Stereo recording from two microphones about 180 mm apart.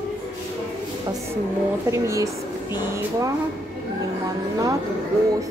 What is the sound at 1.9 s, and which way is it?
Speech, 15° right (ahead or behind).